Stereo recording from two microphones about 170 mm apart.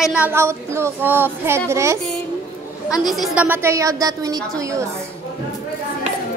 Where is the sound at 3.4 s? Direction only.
15° right (ahead or behind).